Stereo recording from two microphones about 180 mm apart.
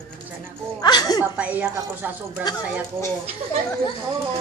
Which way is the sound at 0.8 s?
20° left (ahead or behind).